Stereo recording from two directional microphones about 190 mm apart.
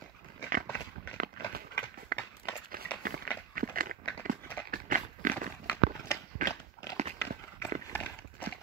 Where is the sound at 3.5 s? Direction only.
50° right (ahead or behind).